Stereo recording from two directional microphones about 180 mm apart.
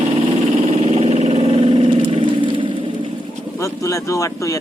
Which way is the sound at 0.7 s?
35° right (ahead or behind).